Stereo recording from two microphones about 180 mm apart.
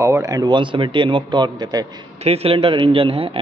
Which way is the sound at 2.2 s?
35° right (ahead or behind).